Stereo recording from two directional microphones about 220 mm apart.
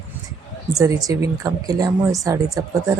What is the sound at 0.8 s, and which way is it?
Speech, 15° right (ahead or behind).